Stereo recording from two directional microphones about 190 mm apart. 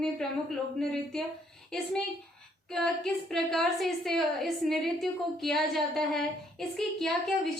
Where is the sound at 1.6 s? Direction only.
5° left (ahead or behind).